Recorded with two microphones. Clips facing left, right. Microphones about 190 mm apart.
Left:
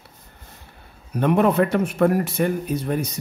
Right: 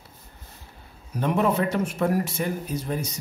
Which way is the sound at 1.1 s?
60° left (ahead or behind).